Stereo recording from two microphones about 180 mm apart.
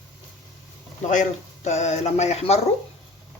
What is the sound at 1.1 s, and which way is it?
Speech, 40° left (ahead or behind).